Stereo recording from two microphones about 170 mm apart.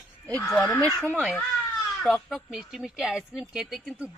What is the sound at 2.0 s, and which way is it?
Speech, centre (ahead or behind).